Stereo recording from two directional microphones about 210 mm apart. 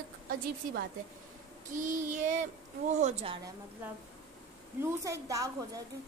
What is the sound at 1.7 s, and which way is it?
Child singing, 35° right (ahead or behind).